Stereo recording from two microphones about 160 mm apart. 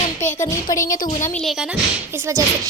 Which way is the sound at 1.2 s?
15° left (ahead or behind).